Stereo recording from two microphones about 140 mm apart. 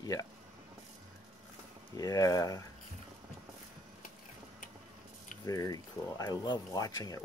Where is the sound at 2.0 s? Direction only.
25° left (ahead or behind).